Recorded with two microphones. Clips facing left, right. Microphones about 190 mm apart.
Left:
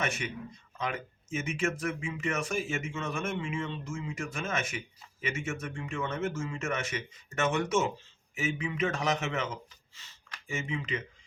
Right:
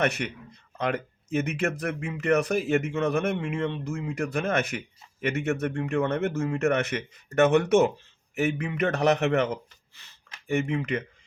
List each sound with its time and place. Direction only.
0.0 s speech: 65° right (ahead or behind)